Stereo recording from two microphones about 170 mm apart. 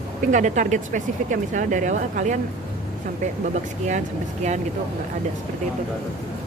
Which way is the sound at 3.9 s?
45° right (ahead or behind).